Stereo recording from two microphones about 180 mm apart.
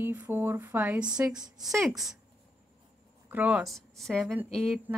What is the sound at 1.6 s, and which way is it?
Speech, centre (ahead or behind).